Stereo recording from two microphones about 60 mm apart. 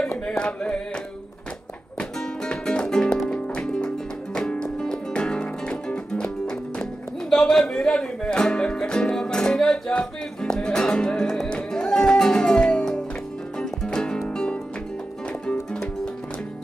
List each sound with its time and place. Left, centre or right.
0.2 s music: centre
7.3 s speech: centre
13.6 s music: centre